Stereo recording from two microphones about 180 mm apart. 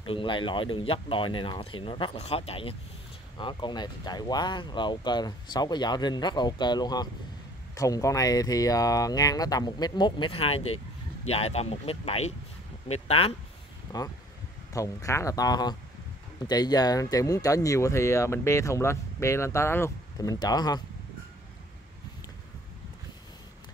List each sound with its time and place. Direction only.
0.0 s speech: 30° left (ahead or behind)
13.9 s speech: 15° left (ahead or behind)